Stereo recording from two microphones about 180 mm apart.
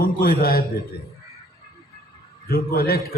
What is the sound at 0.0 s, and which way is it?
Speech, 55° left (ahead or behind).